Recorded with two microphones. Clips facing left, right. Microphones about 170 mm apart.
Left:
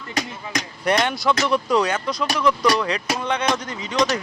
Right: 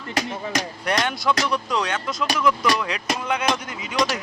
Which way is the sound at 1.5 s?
45° left (ahead or behind).